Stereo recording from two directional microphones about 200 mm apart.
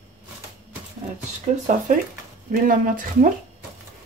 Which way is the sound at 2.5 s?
45° right (ahead or behind).